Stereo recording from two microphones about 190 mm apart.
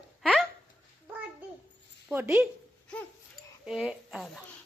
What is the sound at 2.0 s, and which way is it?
Speech, 10° right (ahead or behind).